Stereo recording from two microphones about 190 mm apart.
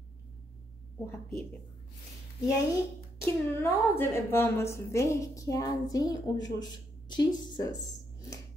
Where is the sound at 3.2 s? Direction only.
15° left (ahead or behind).